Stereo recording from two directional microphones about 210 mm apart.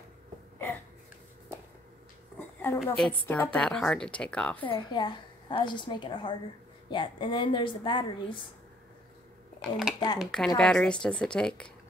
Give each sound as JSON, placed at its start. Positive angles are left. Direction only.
{"t": 2.3, "sound": "a sound", "side_deg": 10}
{"t": 2.8, "sound": "a woman's voice", "side_deg": 5}
{"t": 4.6, "sound": "a woman's voice", "side_deg": 25}
{"t": 9.6, "sound": "speech", "side_deg": 0}